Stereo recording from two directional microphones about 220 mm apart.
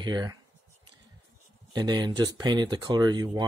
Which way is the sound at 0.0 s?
20° right (ahead or behind).